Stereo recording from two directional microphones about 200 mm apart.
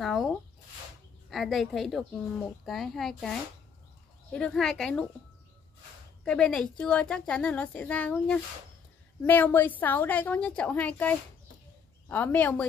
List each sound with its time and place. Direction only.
0.0 s speech: centre (ahead or behind)
1.3 s a woman's voice: centre (ahead or behind)
6.2 s a woman's voice: 5° left (ahead or behind)